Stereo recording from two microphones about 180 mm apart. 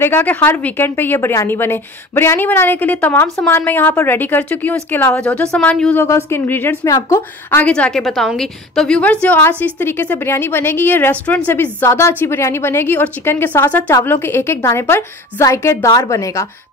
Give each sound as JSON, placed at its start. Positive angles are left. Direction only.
{"t": 0.0, "sound": "a woman's voice", "side_deg": 10}